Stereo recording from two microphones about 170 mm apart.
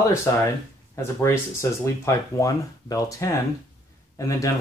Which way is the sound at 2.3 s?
20° left (ahead or behind).